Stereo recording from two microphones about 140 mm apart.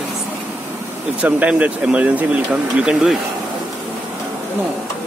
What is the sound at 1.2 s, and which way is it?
Speech, 10° right (ahead or behind).